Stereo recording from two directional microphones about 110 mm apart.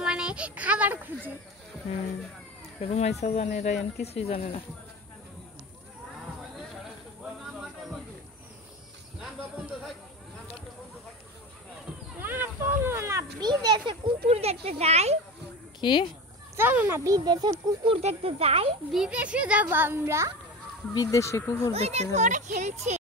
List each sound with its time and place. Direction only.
0.0 s a sound: 5° right (ahead or behind)
2.8 s speech: 75° left (ahead or behind)
4.0 s speech: 70° left (ahead or behind)
12.2 s a sound: 20° right (ahead or behind)
13.4 s a child's voice: 40° right (ahead or behind)
14.3 s speech: 70° right (ahead or behind)
15.8 s speech: 45° left (ahead or behind)
16.5 s speech: 20° right (ahead or behind); by 17.7 s 35° right (ahead or behind)
18.0 s speech: 65° right (ahead or behind)
18.9 s a child's voice: 5° right (ahead or behind); by 20.3 s 25° right (ahead or behind)
20.9 s speech: 35° left (ahead or behind)
21.7 s speech: 70° right (ahead or behind)
22.1 s speech: 90° right